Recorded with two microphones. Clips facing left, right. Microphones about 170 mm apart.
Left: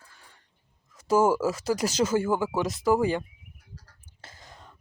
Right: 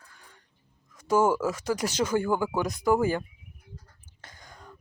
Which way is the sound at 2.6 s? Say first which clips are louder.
Left 1 dB; 20° left (ahead or behind).